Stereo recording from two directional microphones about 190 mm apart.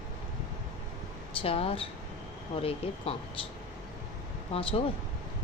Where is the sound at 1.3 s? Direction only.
30° left (ahead or behind).